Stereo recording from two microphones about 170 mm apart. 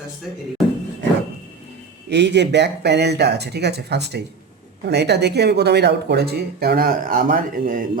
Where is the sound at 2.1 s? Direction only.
90° right.